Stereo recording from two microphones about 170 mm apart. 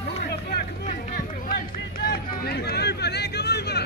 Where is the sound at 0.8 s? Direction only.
55° left (ahead or behind); by 3.8 s 75° left (ahead or behind).